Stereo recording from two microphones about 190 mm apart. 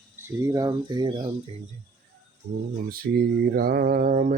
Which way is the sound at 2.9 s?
55° right (ahead or behind).